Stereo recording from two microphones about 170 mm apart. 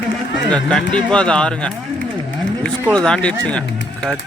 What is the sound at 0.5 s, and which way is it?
Speech, 5° left (ahead or behind).